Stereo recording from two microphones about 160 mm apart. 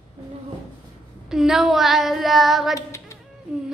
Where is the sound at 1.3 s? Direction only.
Centre (ahead or behind).